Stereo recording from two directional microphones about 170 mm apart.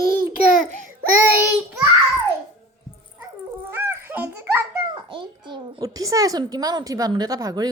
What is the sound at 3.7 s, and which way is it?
Music, 15° right (ahead or behind).